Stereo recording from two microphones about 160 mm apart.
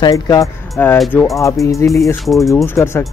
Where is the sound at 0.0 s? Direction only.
25° left (ahead or behind).